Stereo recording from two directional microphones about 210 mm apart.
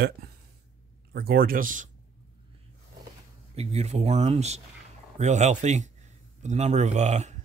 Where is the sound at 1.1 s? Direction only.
45° right (ahead or behind).